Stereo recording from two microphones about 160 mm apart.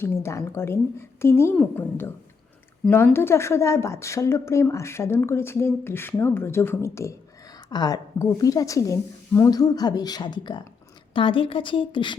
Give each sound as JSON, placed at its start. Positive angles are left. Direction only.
{"t": 0.0, "sound": "a woman's voice", "side_deg": 15}